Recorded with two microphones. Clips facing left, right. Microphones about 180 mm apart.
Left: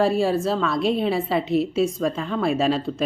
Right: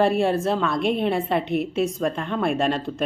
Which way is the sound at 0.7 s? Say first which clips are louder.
Left 1 dB; 55° right (ahead or behind).